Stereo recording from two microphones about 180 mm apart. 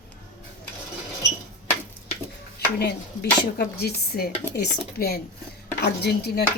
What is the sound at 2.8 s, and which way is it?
Speech, 60° left (ahead or behind).